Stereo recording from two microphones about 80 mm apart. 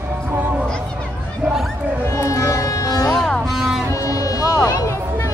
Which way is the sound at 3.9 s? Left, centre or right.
Left.